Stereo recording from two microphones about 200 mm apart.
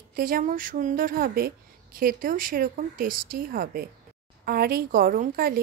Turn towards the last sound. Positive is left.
turn(degrees=-45)  # may be behind; listen again after turning